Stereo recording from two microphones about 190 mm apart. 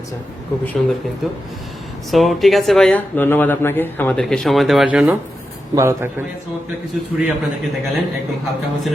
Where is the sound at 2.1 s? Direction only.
Centre (ahead or behind).